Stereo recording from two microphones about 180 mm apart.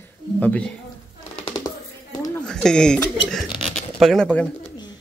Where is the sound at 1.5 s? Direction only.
25° left (ahead or behind).